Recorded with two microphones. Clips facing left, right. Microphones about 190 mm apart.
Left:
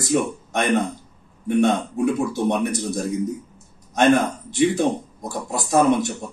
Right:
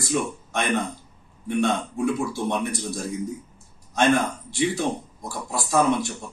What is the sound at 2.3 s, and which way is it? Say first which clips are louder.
Speech: left 5 dB; 20° left (ahead or behind).